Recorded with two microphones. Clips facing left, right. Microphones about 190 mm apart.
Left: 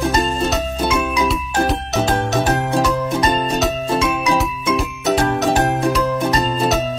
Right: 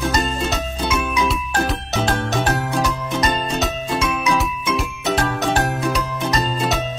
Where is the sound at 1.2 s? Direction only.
5° left (ahead or behind).